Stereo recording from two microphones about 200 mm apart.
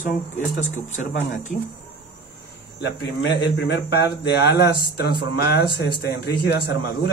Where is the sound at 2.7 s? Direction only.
55° left (ahead or behind).